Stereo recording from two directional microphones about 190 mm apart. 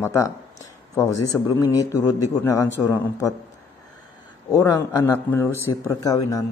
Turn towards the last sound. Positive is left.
turn(degrees=20)  # may be behind; listen again after turning